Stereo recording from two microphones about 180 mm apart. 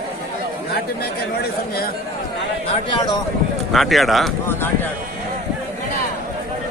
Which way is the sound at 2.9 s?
20° left (ahead or behind).